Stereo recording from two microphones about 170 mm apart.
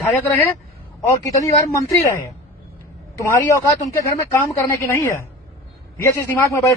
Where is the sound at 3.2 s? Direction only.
15° left (ahead or behind).